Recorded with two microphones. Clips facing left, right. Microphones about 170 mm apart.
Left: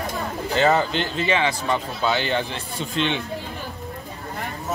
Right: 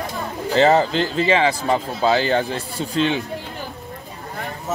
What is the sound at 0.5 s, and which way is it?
Speech, 35° right (ahead or behind).